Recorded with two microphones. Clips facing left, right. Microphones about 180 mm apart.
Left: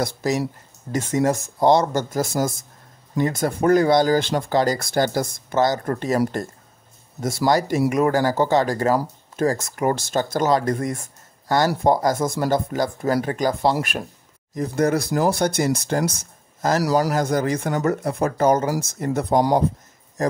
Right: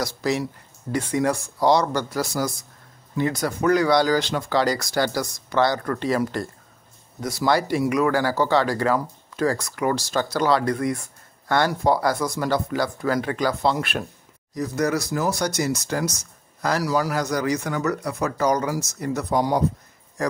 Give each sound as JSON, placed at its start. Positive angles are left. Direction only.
{"t": 0.0, "sound": "speech", "side_deg": 50}
{"t": 14.8, "sound": "speech", "side_deg": 55}
{"t": 16.1, "sound": "a sound", "side_deg": 55}
{"t": 16.9, "sound": "a man's voice", "side_deg": 35}
{"t": 17.2, "sound": "speech", "side_deg": 50}
{"t": 19.3, "sound": "a man's voice", "side_deg": 35}